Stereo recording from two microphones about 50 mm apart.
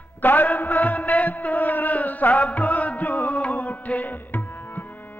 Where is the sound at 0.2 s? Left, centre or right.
Left.